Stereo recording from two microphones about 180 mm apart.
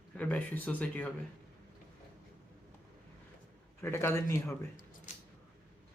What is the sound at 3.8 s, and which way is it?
Speech, 15° left (ahead or behind).